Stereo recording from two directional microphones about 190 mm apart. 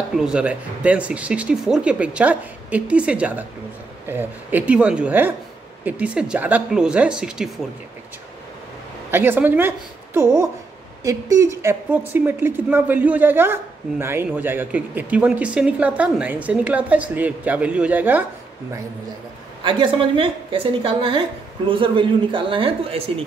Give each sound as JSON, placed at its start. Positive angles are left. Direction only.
{"t": 0.1, "sound": "a woman's voice", "side_deg": -5}
{"t": 9.1, "sound": "speech", "side_deg": -10}
{"t": 19.6, "sound": "a woman's voice", "side_deg": -25}